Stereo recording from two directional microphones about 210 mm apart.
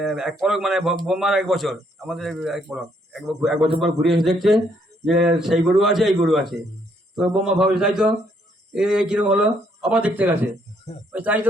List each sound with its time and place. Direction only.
0.0 s a man's voice: centre (ahead or behind)